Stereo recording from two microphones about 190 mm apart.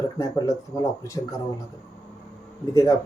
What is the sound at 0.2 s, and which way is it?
Speech, 20° left (ahead or behind).